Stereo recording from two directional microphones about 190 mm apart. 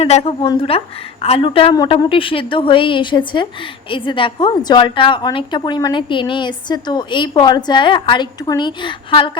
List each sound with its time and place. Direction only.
0.0 s a woman's voice: 35° left (ahead or behind)